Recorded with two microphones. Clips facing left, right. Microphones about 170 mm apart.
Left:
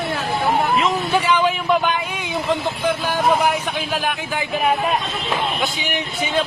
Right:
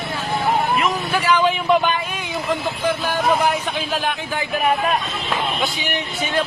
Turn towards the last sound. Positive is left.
turn(degrees=15)  # may be behind; listen again after turning